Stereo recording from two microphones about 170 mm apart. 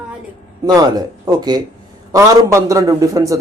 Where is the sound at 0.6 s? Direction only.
20° right (ahead or behind).